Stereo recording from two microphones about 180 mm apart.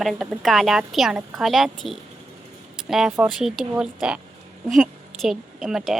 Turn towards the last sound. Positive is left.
turn(degrees=0)  # may be behind; listen again after turning